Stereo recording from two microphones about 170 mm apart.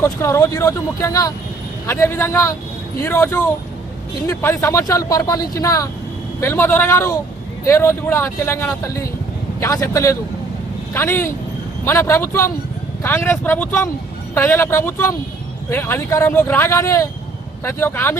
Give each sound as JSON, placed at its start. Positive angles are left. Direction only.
{"t": 0.0, "sound": "speech", "side_deg": 15}